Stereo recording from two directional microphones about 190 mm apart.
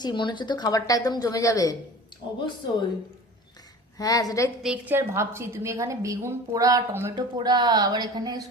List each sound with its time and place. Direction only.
0.0 s a woman's voice: 25° left (ahead or behind)
3.9 s a woman's voice: 20° left (ahead or behind)
4.6 s a woman's voice: 10° right (ahead or behind)